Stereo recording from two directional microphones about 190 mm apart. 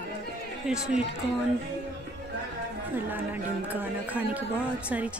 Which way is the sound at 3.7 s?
10° right (ahead or behind).